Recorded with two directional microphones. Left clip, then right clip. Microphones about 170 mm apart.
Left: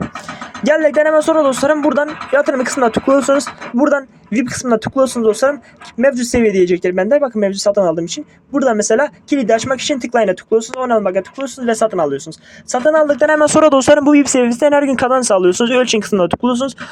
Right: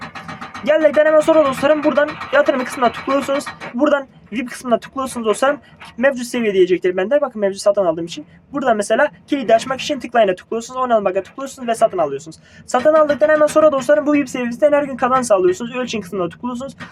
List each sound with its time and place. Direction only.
0.6 s speech: 25° left (ahead or behind)
11.6 s speech: 30° left (ahead or behind)
13.1 s speech: 50° left (ahead or behind); by 16.7 s 35° left (ahead or behind)